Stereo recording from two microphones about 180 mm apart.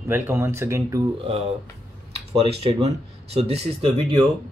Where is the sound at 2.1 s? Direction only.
35° right (ahead or behind).